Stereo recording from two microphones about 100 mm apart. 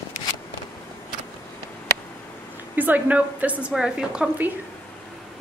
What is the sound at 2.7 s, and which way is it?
A woman's voice, 15° right (ahead or behind).